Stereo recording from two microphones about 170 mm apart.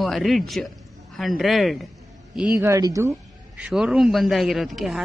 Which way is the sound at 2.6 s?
20° right (ahead or behind).